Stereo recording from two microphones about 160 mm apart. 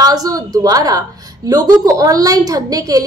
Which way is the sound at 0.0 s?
25° right (ahead or behind).